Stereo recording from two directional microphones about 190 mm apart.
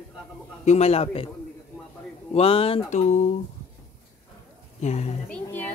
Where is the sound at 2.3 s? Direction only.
30° left (ahead or behind).